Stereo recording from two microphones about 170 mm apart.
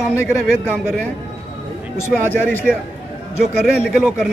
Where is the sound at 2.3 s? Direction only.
10° left (ahead or behind).